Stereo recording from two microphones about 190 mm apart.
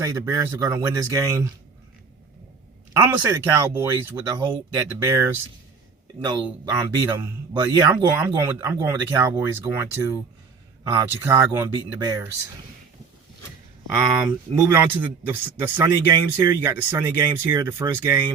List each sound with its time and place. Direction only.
0.0 s speech: 15° right (ahead or behind)
2.9 s speech: 15° right (ahead or behind)
14.2 s speech: 10° right (ahead or behind)